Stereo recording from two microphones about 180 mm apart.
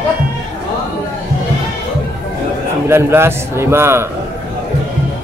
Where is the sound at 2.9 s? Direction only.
15° right (ahead or behind).